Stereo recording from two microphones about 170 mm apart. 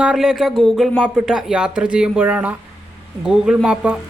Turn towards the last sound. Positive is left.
turn(degrees=-5)  # may be behind; listen again after turning